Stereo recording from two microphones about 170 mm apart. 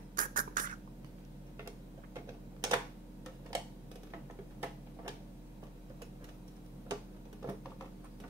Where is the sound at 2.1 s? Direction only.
20° right (ahead or behind).